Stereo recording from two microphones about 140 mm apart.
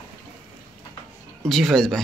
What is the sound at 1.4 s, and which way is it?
Speech, centre (ahead or behind).